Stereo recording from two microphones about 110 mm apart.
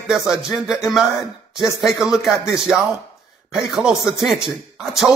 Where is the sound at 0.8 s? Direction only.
Centre (ahead or behind).